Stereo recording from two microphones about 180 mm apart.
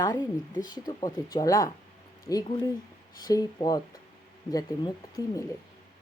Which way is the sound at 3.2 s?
20° left (ahead or behind).